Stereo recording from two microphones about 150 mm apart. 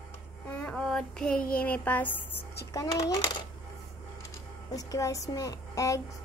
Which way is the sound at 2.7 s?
25° left (ahead or behind).